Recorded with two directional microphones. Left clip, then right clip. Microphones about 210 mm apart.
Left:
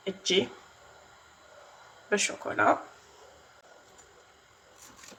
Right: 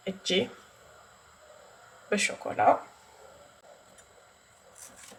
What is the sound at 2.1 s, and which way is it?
Speech, 5° left (ahead or behind).